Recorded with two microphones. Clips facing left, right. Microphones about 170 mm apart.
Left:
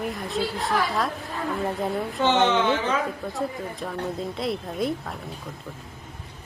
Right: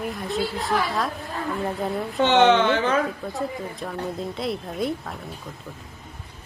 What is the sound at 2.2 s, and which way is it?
Speech, 70° right (ahead or behind).